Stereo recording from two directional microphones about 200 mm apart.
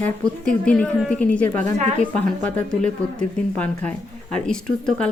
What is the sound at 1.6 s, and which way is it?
Speech, 35° right (ahead or behind).